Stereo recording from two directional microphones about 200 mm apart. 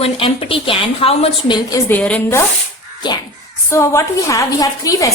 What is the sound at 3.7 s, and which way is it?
A woman's voice, 15° left (ahead or behind).